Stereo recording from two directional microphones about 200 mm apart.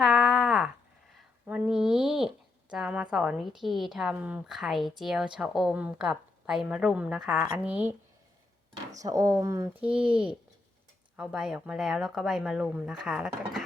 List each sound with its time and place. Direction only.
0.0 s a sound: centre (ahead or behind)
1.5 s speech: 5° right (ahead or behind)
9.0 s speech: 15° right (ahead or behind)